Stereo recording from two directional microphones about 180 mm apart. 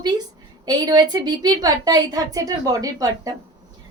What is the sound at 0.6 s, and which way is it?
A woman's voice, 20° right (ahead or behind).